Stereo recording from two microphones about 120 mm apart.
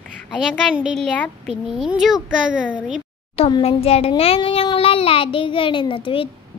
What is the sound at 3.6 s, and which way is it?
A child's voice, 55° left (ahead or behind).